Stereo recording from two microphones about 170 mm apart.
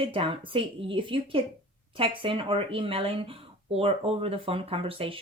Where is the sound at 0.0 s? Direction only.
30° right (ahead or behind).